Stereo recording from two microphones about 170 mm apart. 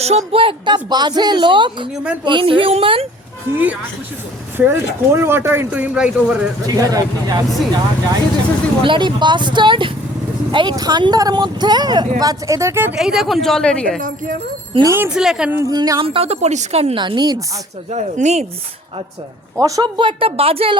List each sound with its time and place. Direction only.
0.0 s a woman's voice: 35° right (ahead or behind)
3.5 s speech: 10° right (ahead or behind)
6.7 s speech: 20° right (ahead or behind)
8.8 s speech: 30° right (ahead or behind); by 13.0 s 15° right (ahead or behind)
13.0 s speech: centre (ahead or behind)
14.7 s speech: 25° right (ahead or behind)
14.9 s speech: 10° right (ahead or behind)
15.7 s a woman's voice: 25° right (ahead or behind)
17.9 s a woman's voice: 40° right (ahead or behind)
19.5 s a woman's voice: 20° right (ahead or behind)